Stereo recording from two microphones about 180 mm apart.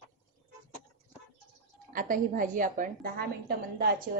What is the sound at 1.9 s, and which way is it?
A woman's voice, 50° right (ahead or behind).